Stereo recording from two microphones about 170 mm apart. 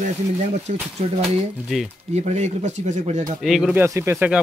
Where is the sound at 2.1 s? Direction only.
40° right (ahead or behind).